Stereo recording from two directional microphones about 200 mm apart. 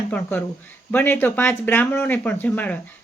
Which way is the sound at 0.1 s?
10° left (ahead or behind).